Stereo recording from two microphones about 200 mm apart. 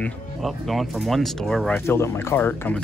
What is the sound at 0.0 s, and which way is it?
Speech, centre (ahead or behind).